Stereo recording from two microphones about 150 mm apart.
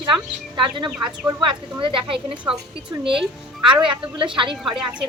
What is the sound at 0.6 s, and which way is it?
A woman's voice, 30° right (ahead or behind).